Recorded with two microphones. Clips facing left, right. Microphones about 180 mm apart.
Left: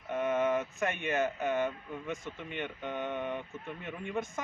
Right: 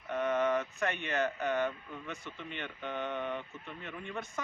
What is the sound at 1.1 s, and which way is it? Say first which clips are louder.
A man's voice: left 1 dB; 10° left (ahead or behind).